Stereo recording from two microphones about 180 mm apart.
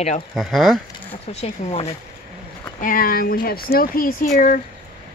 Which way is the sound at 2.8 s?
50° left (ahead or behind).